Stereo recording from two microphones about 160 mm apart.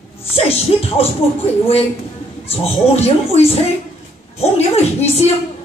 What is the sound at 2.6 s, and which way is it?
Speech, 40° left (ahead or behind).